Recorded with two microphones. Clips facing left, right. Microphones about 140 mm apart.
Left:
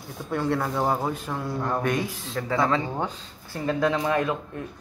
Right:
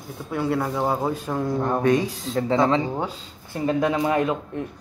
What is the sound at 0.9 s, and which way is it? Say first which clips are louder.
Speech: right 2 dB; 20° right (ahead or behind).